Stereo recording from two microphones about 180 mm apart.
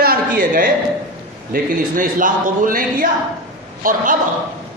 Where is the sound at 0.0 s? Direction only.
50° right (ahead or behind).